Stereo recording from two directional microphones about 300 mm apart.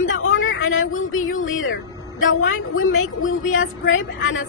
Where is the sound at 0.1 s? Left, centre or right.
Left.